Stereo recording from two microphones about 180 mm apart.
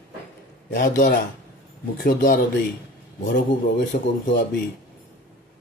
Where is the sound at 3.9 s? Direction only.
45° left (ahead or behind).